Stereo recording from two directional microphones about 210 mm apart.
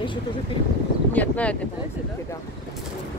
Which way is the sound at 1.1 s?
5° left (ahead or behind).